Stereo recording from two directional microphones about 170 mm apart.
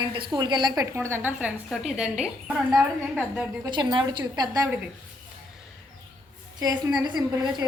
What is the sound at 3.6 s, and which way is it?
A woman's voice, 25° right (ahead or behind).